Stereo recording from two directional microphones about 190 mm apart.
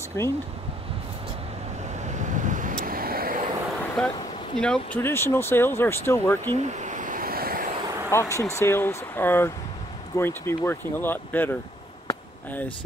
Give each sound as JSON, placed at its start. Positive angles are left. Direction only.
{"t": 0.2, "sound": "speech", "side_deg": 15}
{"t": 2.0, "sound": "vehicle", "side_deg": -40}
{"t": 4.0, "sound": "speech", "side_deg": 5}
{"t": 6.5, "sound": "a sound", "side_deg": -35}
{"t": 8.1, "sound": "speech", "side_deg": 15}